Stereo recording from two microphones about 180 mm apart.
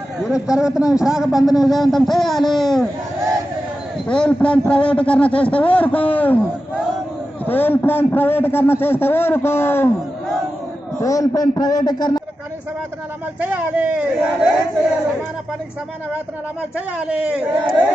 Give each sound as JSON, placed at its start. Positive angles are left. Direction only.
{"t": 0.2, "sound": "a man's voice", "side_deg": -5}
{"t": 4.1, "sound": "a man's voice", "side_deg": 5}
{"t": 7.4, "sound": "a man's voice", "side_deg": 10}
{"t": 11.0, "sound": "a man's voice", "side_deg": 20}
{"t": 13.4, "sound": "speech", "side_deg": -10}
{"t": 16.7, "sound": "speech", "side_deg": -5}